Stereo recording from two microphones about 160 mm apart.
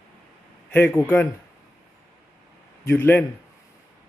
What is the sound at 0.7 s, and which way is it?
Speech, 10° left (ahead or behind).